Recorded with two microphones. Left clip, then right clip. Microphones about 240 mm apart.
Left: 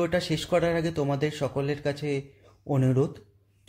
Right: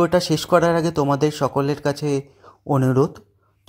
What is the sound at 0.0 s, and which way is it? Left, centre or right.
A man's voice, right.